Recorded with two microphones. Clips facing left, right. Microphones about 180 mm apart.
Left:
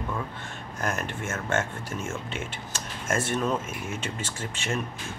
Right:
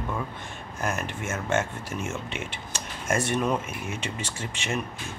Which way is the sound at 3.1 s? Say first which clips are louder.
Right 1 dB; 15° right (ahead or behind).